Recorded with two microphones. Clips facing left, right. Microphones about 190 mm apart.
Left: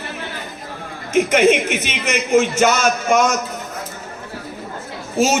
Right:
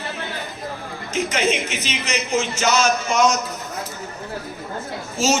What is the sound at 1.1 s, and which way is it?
A man's voice, 55° left (ahead or behind).